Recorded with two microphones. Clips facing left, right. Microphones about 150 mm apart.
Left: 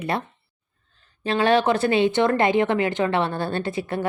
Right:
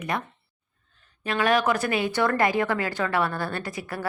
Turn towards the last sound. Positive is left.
turn(degrees=25)  # may be behind; listen again after turning